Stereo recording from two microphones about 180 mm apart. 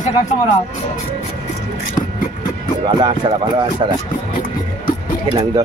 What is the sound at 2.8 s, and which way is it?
Speech, 25° right (ahead or behind).